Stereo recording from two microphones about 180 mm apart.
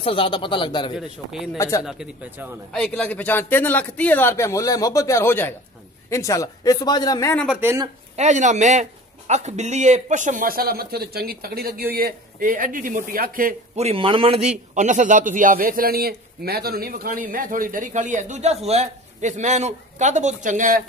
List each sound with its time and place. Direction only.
0.0 s speech: 30° left (ahead or behind)
0.9 s a man's voice: centre (ahead or behind)
2.7 s a man's voice: 5° left (ahead or behind); by 7.3 s 20° left (ahead or behind)
7.6 s speech: 15° right (ahead or behind)
8.2 s a man's voice: 40° right (ahead or behind)
13.7 s speech: 35° right (ahead or behind)
14.7 s a man's voice: 45° right (ahead or behind)